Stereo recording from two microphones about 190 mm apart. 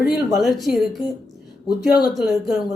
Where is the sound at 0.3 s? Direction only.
Centre (ahead or behind).